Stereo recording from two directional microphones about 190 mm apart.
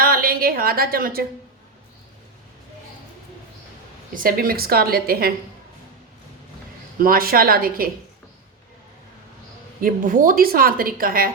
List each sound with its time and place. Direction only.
0.0 s a sound: 50° right (ahead or behind)
4.1 s a woman's voice: 50° right (ahead or behind)
7.0 s a woman's voice: 50° right (ahead or behind)
9.8 s a woman's voice: 45° right (ahead or behind)